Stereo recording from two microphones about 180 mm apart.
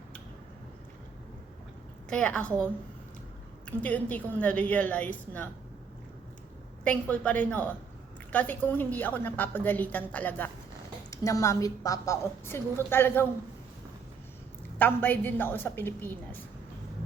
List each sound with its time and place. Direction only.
2.0 s a woman's voice: 5° left (ahead or behind)
3.7 s a woman's voice: 10° left (ahead or behind)
6.8 s a woman's voice: 10° left (ahead or behind)
14.8 s a woman's voice: 10° left (ahead or behind)